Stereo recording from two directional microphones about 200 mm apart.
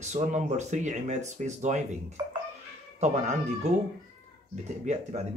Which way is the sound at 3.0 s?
35° right (ahead or behind).